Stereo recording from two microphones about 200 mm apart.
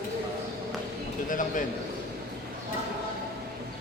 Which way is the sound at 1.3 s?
40° left (ahead or behind).